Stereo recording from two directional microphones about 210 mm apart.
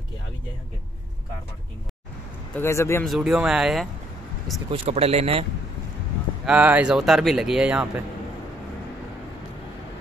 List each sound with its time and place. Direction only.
2.5 s speech: 10° left (ahead or behind)
3.1 s a man's voice: 5° right (ahead or behind)
4.6 s speech: 30° right (ahead or behind)
6.4 s a man's voice: 5° right (ahead or behind)